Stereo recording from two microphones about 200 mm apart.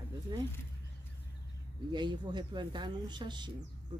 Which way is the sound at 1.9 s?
20° right (ahead or behind).